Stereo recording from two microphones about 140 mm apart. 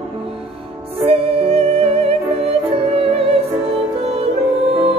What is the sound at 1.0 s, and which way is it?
Music, 45° right (ahead or behind).